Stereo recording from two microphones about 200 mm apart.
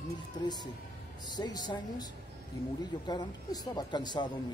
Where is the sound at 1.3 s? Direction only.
20° left (ahead or behind).